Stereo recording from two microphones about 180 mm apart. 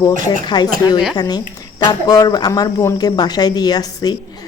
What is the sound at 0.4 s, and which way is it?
Speech, 25° left (ahead or behind).